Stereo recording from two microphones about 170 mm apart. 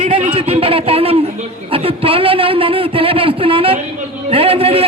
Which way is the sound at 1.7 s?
35° right (ahead or behind).